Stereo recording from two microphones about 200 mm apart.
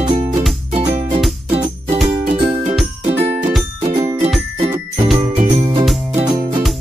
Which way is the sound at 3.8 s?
20° right (ahead or behind).